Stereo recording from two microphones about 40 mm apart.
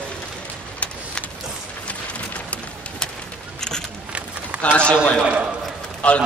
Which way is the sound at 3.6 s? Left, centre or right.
Centre.